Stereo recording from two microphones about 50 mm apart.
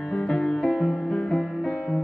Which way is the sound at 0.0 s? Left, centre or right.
Centre.